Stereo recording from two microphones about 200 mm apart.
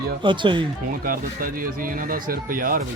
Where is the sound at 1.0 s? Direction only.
45° right (ahead or behind).